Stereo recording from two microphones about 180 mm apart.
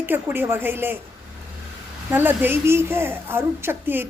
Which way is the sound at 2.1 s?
10° right (ahead or behind).